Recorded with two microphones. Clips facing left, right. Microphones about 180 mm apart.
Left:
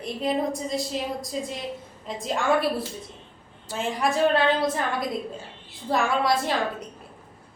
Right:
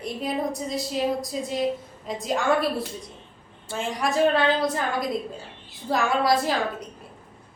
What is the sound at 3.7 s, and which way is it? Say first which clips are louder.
A woman's voice: even; centre (ahead or behind).